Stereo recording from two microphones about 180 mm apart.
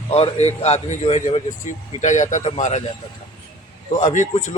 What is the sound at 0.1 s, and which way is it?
A man's voice, 35° left (ahead or behind).